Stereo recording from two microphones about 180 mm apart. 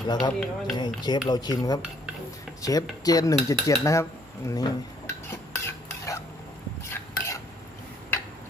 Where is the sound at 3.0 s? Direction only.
20° left (ahead or behind).